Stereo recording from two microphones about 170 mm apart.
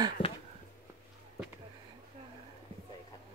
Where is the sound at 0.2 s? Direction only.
30° left (ahead or behind).